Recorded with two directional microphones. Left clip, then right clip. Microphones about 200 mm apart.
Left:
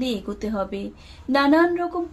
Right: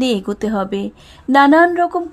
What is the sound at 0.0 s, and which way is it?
A woman's voice, 45° right (ahead or behind).